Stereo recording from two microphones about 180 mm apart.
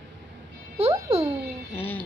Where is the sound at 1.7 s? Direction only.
10° left (ahead or behind).